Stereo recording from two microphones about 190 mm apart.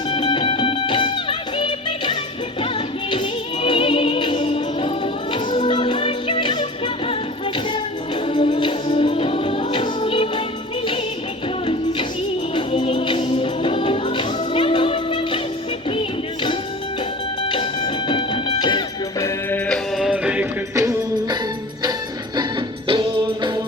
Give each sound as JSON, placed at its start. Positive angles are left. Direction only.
{"t": 0.1, "sound": "music", "side_deg": 25}
{"t": 3.6, "sound": "music", "side_deg": 25}
{"t": 8.3, "sound": "music", "side_deg": 25}
{"t": 11.6, "sound": "music", "side_deg": 30}
{"t": 19.2, "sound": "music", "side_deg": 10}
{"t": 20.1, "sound": "music", "side_deg": -5}
{"t": 22.9, "sound": "music", "side_deg": -25}